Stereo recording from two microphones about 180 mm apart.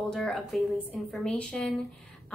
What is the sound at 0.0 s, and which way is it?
A woman's voice, centre (ahead or behind).